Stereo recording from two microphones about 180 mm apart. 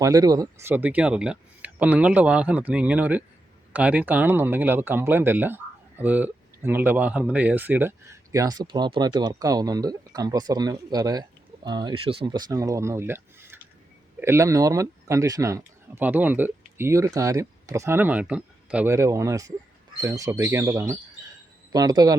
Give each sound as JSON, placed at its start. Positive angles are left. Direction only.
{"t": 0.0, "sound": "speech", "side_deg": -20}